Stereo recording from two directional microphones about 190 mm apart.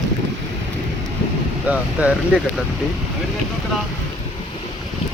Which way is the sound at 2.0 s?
5° right (ahead or behind).